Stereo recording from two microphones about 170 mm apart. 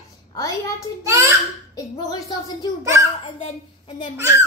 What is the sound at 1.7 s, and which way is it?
A child's voice, 20° left (ahead or behind).